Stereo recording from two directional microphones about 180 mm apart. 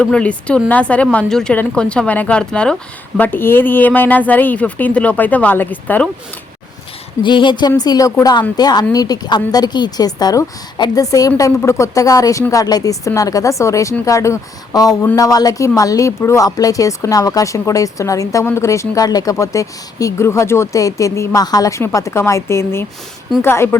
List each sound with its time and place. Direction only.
0.0 s speech: 5° left (ahead or behind)
7.2 s a woman's voice: 25° left (ahead or behind)